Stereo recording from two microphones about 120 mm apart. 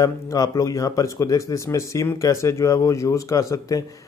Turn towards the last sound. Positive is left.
turn(degrees=30)  # may be behind; listen again after turning